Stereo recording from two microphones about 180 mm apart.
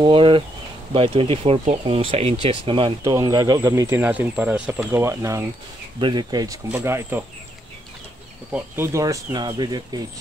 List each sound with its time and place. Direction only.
0.0 s speech: 30° right (ahead or behind)
3.0 s speech: 20° right (ahead or behind)
5.9 s speech: 25° right (ahead or behind)
8.5 s speech: 15° right (ahead or behind)